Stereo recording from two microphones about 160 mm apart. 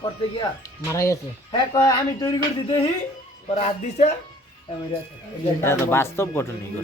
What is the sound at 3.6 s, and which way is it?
Speech, 45° left (ahead or behind).